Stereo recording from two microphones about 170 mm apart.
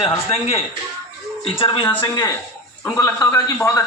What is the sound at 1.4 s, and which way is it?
Speech, 30° left (ahead or behind).